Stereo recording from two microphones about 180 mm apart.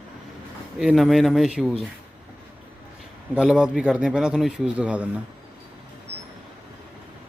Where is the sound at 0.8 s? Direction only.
Centre (ahead or behind).